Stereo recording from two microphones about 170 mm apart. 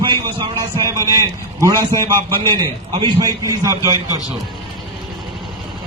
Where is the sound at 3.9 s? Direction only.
20° left (ahead or behind).